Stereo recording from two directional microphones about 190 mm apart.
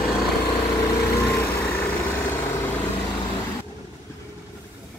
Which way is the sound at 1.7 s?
15° left (ahead or behind).